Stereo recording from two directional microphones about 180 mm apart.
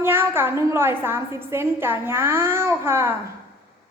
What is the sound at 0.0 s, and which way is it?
A woman's voice, 10° right (ahead or behind).